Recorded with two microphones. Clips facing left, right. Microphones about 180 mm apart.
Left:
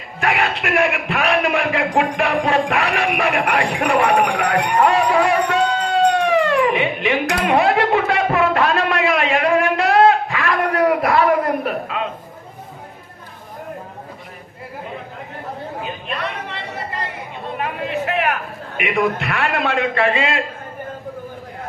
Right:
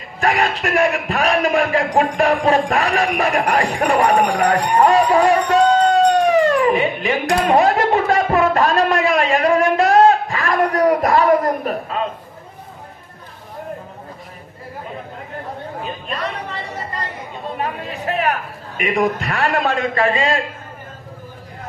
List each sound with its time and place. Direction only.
0.2 s a man's voice: 40° right (ahead or behind)
15.8 s chatter: 40° right (ahead or behind)
17.6 s a man's voice: 40° right (ahead or behind)